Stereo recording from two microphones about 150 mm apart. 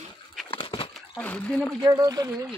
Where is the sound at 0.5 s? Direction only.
35° left (ahead or behind).